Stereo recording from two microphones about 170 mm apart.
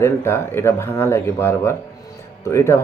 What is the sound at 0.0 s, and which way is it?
Speech, 15° left (ahead or behind).